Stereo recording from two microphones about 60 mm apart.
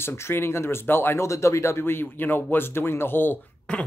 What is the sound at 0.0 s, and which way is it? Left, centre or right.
Speech, left.